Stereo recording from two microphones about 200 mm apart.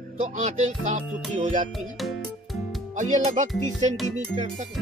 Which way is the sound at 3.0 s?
35° right (ahead or behind).